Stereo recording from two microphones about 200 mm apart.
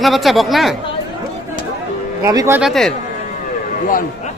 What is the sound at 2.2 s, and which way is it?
Speech, 15° right (ahead or behind).